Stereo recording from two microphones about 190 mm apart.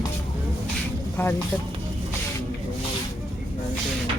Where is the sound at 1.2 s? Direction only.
10° left (ahead or behind).